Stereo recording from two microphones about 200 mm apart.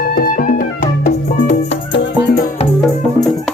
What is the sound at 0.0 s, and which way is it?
Music, 45° left (ahead or behind).